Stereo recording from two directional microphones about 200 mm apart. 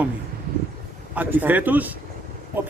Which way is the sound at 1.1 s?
10° right (ahead or behind).